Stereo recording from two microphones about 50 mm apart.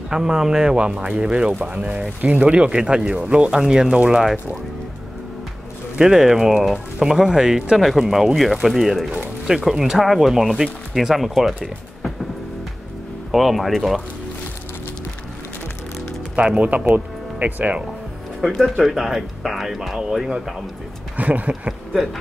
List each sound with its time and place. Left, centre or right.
0.1 s a man's voice: centre
5.9 s a man's voice: centre
13.3 s speech: centre
16.3 s speech: right
16.7 s speech: right
18.4 s speech: centre
21.2 s speech: right